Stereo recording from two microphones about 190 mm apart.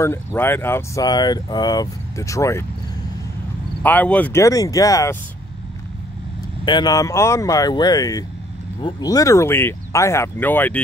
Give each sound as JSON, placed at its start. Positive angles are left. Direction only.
{"t": 0.0, "sound": "speech", "side_deg": 10}
{"t": 3.8, "sound": "speech", "side_deg": 10}
{"t": 6.6, "sound": "speech", "side_deg": 25}